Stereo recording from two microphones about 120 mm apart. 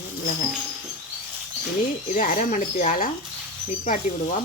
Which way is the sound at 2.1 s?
90° left.